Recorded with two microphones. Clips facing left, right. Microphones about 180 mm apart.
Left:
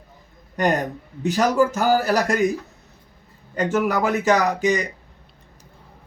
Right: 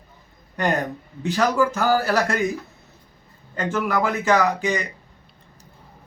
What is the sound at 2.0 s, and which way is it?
Speech, 15° left (ahead or behind).